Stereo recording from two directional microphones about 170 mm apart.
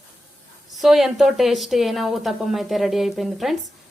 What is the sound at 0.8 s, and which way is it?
Speech, centre (ahead or behind).